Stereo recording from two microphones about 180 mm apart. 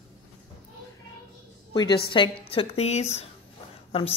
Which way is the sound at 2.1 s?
30° left (ahead or behind).